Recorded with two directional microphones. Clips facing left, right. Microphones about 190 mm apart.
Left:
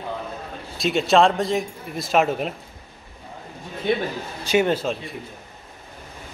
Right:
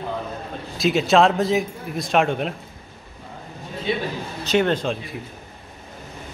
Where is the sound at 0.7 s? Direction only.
Centre (ahead or behind).